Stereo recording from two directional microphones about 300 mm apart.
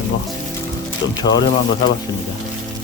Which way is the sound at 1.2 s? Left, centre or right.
Centre.